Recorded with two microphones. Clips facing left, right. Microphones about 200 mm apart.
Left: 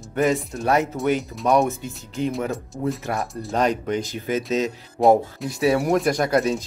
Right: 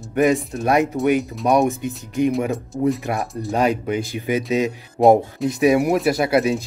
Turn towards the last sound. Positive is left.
turn(degrees=-10)  # may be behind; listen again after turning